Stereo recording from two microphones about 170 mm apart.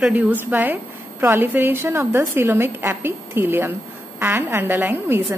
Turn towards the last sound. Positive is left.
turn(degrees=-10)  # may be behind; listen again after turning